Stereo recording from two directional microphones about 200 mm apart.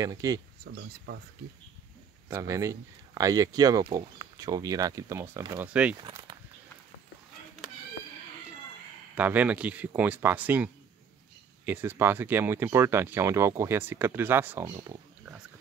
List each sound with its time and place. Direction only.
0.0 s speech: 20° right (ahead or behind)
0.7 s speech: 55° right (ahead or behind)
2.2 s speech: 15° right (ahead or behind)
9.1 s speech: 5° right (ahead or behind)